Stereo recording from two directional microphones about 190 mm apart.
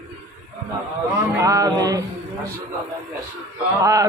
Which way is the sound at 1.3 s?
15° right (ahead or behind).